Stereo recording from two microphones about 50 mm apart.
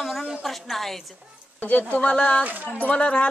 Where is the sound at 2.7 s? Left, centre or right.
Left.